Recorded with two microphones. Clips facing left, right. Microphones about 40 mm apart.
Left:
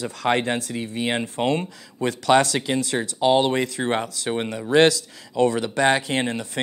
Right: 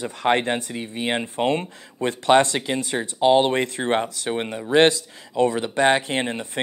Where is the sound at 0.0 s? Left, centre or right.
Right.